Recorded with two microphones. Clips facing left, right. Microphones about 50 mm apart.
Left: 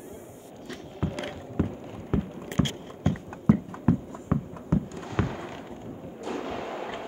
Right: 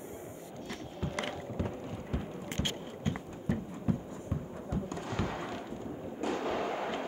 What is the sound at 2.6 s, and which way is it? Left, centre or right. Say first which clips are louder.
Clip-clop: left 5 dB; left.